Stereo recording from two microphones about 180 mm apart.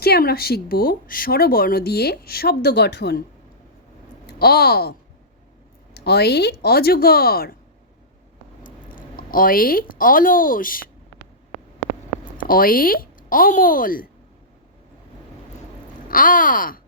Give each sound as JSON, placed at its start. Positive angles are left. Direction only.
{"t": 0.0, "sound": "speech", "side_deg": 60}
{"t": 4.3, "sound": "speech", "side_deg": 60}
{"t": 9.0, "sound": "speech", "side_deg": 50}
{"t": 12.4, "sound": "speech", "side_deg": 50}
{"t": 16.0, "sound": "speech", "side_deg": 50}